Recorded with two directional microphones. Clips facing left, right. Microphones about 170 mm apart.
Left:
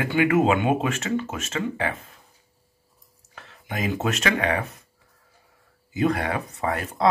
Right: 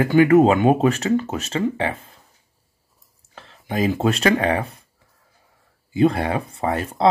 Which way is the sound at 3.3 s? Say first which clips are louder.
Right 7 dB; 30° right (ahead or behind).